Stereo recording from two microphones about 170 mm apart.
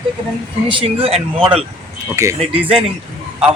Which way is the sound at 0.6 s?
30° right (ahead or behind).